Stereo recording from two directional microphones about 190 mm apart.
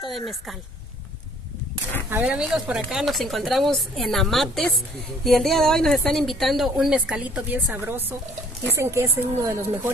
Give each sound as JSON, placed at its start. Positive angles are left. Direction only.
{"t": 0.0, "sound": "speech", "side_deg": 0}
{"t": 2.0, "sound": "a woman's voice", "side_deg": -10}